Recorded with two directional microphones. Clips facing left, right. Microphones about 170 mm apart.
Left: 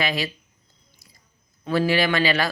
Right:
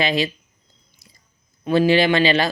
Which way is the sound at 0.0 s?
20° right (ahead or behind).